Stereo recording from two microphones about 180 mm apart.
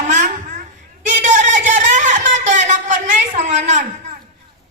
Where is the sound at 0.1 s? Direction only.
45° right (ahead or behind).